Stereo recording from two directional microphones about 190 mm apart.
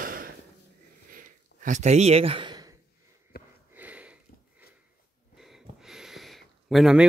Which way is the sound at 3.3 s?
55° left (ahead or behind).